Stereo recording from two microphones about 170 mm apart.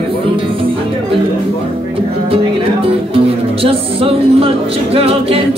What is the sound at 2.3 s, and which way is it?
Music, 35° right (ahead or behind).